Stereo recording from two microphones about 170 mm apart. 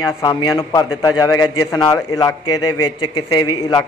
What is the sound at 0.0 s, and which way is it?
A man's voice, 25° left (ahead or behind).